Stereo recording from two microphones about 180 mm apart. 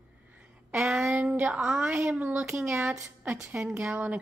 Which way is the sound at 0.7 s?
Centre (ahead or behind).